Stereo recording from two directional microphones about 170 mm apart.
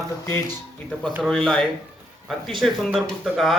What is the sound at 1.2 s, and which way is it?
Speech, 5° left (ahead or behind).